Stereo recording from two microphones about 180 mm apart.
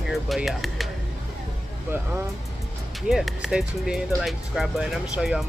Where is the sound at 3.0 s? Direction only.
Centre (ahead or behind).